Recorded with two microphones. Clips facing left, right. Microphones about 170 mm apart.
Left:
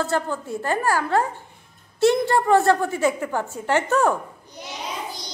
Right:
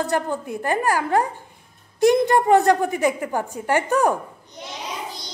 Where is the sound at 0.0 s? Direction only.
15° right (ahead or behind).